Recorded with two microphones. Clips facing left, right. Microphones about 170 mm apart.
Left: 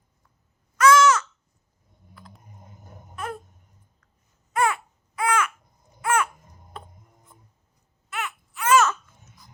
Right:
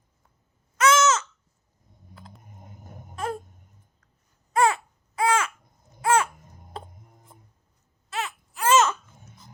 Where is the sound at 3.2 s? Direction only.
30° right (ahead or behind).